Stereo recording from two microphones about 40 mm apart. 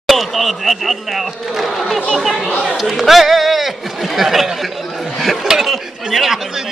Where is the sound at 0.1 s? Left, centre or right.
Centre.